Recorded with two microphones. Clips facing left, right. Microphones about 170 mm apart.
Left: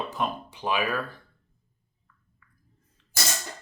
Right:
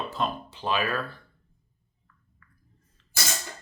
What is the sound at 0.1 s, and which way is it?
Speech, 15° left (ahead or behind).